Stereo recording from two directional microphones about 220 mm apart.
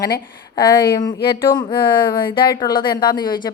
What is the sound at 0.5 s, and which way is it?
Speech, 20° left (ahead or behind).